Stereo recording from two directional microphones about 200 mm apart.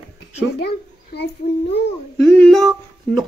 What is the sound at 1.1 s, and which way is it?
Speech, 55° left (ahead or behind).